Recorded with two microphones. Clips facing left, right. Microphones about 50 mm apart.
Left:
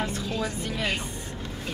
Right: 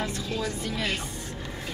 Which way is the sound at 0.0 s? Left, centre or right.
Centre.